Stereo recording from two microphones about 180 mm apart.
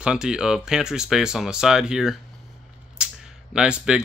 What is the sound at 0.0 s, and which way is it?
Speech, 5° right (ahead or behind).